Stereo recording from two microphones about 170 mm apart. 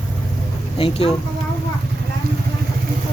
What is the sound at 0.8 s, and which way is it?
Speech, 35° left (ahead or behind).